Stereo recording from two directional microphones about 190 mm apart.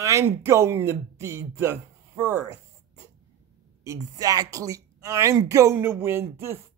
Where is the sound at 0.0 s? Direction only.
15° right (ahead or behind).